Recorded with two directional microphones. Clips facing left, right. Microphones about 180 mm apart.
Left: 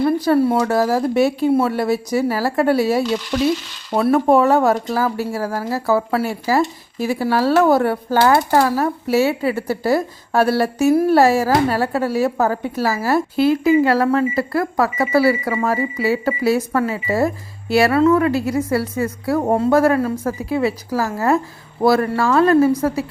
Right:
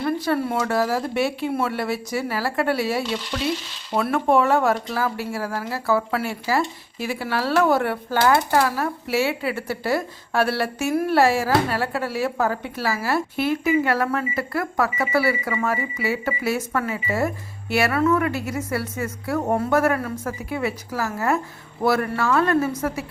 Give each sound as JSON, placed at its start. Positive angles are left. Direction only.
{"t": 0.0, "sound": "speech", "side_deg": 30}